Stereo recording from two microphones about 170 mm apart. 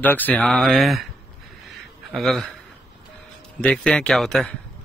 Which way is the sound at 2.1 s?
Centre (ahead or behind).